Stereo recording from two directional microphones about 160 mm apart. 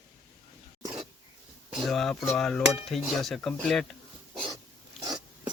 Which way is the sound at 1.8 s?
Centre (ahead or behind).